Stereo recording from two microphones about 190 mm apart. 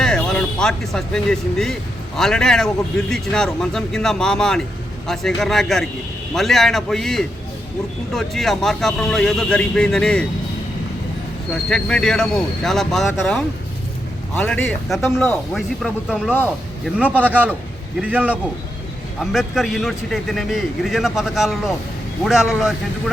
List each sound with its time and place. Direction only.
0.0 s speech: 5° left (ahead or behind)
11.5 s a man's voice: 5° left (ahead or behind)